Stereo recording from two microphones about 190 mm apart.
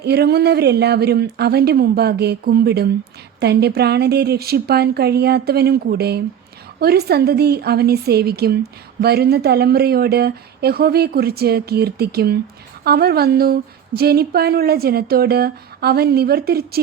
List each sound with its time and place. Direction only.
0.0 s speech: 60° right (ahead or behind)